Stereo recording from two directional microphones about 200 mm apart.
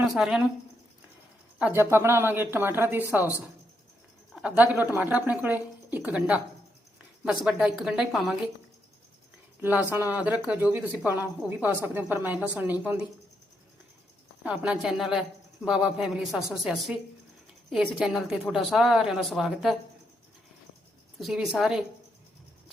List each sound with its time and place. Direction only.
0.1 s a woman's voice: centre (ahead or behind)
1.5 s speech: 10° right (ahead or behind)
4.4 s a woman's voice: 5° right (ahead or behind)
9.6 s speech: 10° right (ahead or behind)
14.4 s a woman's voice: 5° right (ahead or behind)
21.2 s a woman's voice: centre (ahead or behind)